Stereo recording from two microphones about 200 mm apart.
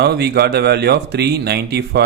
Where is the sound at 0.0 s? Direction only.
55° right (ahead or behind).